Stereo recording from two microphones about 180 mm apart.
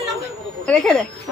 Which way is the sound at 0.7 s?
Centre (ahead or behind).